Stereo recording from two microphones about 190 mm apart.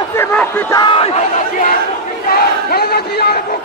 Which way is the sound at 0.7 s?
25° left (ahead or behind).